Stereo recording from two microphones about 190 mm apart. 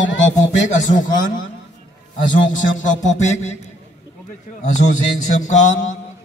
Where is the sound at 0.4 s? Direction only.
40° left (ahead or behind).